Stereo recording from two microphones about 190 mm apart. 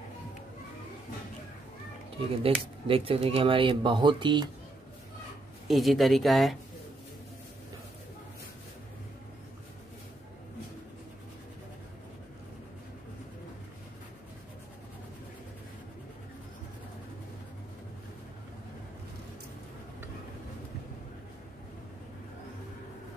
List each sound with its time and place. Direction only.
2.4 s speech: 30° right (ahead or behind)
5.7 s speech: centre (ahead or behind)